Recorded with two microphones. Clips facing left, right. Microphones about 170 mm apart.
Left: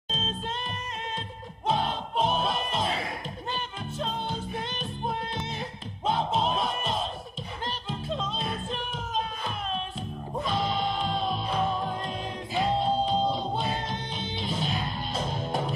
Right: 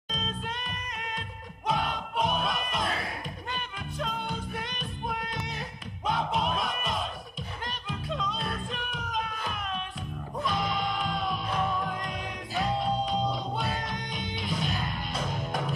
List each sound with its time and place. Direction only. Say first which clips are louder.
0.1 s music: left 2 dB; 25° left (ahead or behind)